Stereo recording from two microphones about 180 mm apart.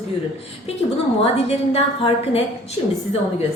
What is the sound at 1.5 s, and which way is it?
Speech, 35° left (ahead or behind).